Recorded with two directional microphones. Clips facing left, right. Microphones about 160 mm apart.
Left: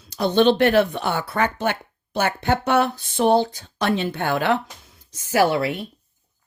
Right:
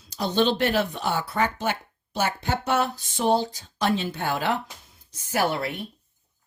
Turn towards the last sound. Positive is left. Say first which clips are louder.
# left 6 dB
turn(degrees=90)